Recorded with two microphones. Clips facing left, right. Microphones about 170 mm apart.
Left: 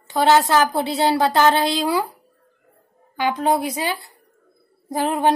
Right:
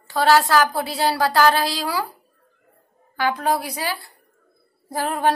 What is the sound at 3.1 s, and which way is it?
A woman's voice, 20° left (ahead or behind).